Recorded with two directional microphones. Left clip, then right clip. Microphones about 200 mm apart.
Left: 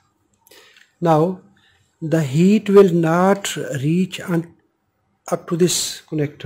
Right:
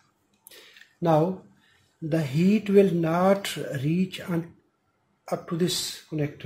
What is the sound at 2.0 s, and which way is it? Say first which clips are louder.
Speech: left 8 dB; 45° left (ahead or behind).